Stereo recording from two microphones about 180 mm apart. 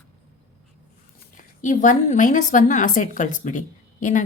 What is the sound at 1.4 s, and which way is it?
A woman's voice, 45° left (ahead or behind).